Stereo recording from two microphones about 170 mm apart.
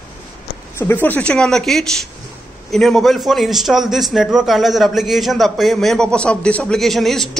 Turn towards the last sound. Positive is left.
turn(degrees=0)  # may be behind; listen again after turning